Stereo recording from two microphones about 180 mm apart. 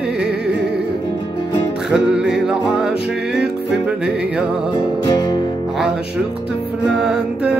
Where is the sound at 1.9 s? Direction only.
5° right (ahead or behind).